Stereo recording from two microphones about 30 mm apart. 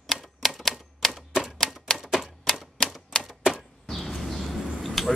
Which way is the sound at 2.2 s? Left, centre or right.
Centre.